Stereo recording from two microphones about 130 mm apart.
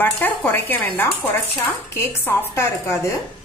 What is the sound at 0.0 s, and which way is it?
A woman's voice, 15° left (ahead or behind).